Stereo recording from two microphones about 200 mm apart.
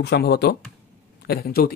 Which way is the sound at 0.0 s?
55° left (ahead or behind).